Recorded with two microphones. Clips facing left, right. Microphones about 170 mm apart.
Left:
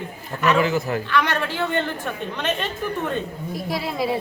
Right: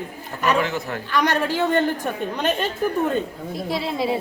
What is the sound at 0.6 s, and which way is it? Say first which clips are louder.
Speech: left 3 dB; centre (ahead or behind).